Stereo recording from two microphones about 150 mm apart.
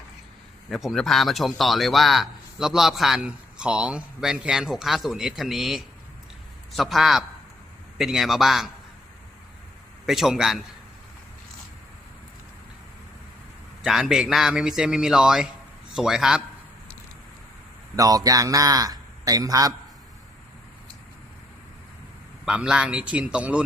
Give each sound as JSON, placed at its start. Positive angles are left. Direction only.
{"t": 0.7, "sound": "a man's voice", "side_deg": 0}
{"t": 10.1, "sound": "a man's voice", "side_deg": 0}
{"t": 13.8, "sound": "a man's voice", "side_deg": 0}
{"t": 17.9, "sound": "a man's voice", "side_deg": -25}
{"t": 22.4, "sound": "a man's voice", "side_deg": -5}